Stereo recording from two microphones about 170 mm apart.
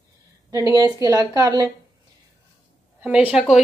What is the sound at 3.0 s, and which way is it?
Speech, 5° right (ahead or behind).